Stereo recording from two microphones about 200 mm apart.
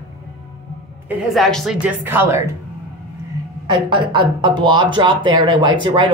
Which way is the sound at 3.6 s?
25° right (ahead or behind).